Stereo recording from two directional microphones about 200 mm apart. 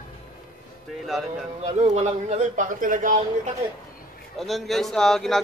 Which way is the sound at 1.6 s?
35° right (ahead or behind).